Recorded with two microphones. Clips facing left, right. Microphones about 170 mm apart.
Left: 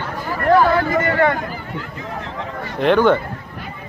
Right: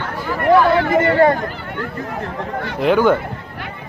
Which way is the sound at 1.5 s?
65° right (ahead or behind).